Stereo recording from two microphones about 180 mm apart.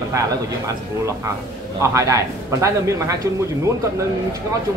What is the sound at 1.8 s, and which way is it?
Speech, 15° right (ahead or behind).